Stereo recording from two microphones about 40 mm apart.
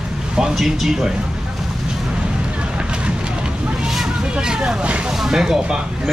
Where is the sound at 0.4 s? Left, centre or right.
Centre.